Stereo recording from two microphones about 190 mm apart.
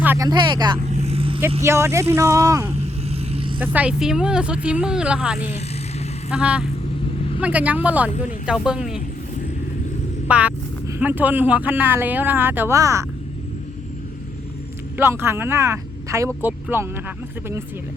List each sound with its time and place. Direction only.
0.0 s vehicle: 10° right (ahead or behind)
0.3 s speech: 20° right (ahead or behind)
0.9 s vehicle: 35° right (ahead or behind)
1.6 s speech: 15° right (ahead or behind)
2.7 s vehicle: 35° right (ahead or behind)
3.6 s speech: 10° right (ahead or behind)
10.2 s speech: 5° right (ahead or behind)
14.9 s speech: 10° right (ahead or behind)